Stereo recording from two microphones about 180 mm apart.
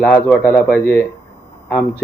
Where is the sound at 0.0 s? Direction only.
10° left (ahead or behind).